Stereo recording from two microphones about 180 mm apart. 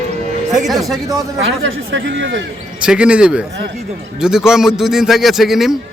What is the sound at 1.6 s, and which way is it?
Speech, 85° right.